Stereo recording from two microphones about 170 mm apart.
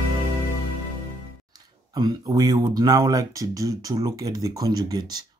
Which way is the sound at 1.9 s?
25° right (ahead or behind).